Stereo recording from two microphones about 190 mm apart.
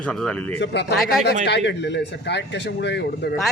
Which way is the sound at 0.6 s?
65° left (ahead or behind).